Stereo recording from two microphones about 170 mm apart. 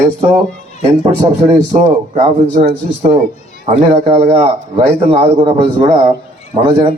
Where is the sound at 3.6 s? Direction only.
35° right (ahead or behind).